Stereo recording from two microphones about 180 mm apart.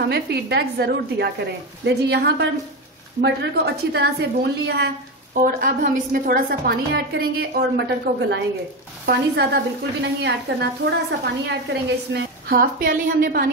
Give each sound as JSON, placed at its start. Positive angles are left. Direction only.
{"t": 0.1, "sound": "a woman's voice", "side_deg": -65}
{"t": 12.1, "sound": "a woman's voice", "side_deg": -55}